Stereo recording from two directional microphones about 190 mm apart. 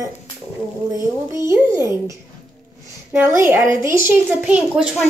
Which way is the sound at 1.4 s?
15° right (ahead or behind).